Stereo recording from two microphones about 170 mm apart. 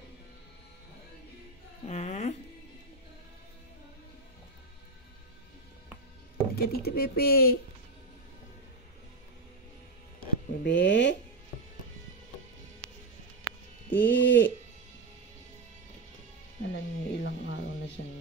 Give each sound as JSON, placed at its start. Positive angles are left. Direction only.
{"t": 1.9, "sound": "speech", "side_deg": 40}
{"t": 6.5, "sound": "speech", "side_deg": 65}
{"t": 10.2, "sound": "a sound", "side_deg": 90}
{"t": 13.8, "sound": "music", "side_deg": 10}
{"t": 14.1, "sound": "speech", "side_deg": 90}
{"t": 16.7, "sound": "a sound", "side_deg": 90}
{"t": 18.0, "sound": "music", "side_deg": 90}